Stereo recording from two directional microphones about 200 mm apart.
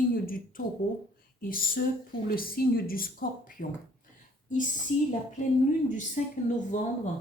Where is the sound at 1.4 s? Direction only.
45° left (ahead or behind).